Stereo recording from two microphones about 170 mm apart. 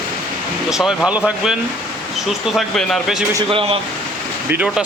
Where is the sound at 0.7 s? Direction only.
Centre (ahead or behind).